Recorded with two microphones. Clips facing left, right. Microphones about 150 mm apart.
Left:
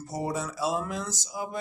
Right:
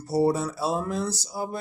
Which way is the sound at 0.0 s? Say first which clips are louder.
Right 8 dB; 35° right (ahead or behind).